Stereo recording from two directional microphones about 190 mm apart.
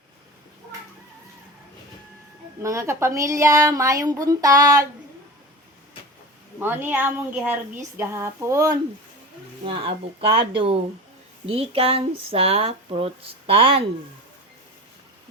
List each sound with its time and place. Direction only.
2.6 s speech: 15° right (ahead or behind)
6.6 s speech: 10° right (ahead or behind)
9.6 s speech: 30° right (ahead or behind)